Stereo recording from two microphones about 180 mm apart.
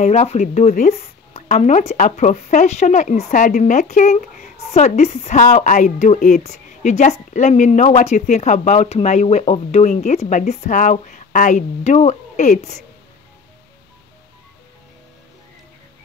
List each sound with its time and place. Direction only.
0.0 s speech: 40° left (ahead or behind)